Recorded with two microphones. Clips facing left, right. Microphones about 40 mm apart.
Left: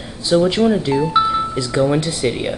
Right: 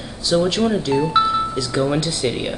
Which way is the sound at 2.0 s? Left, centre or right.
Centre.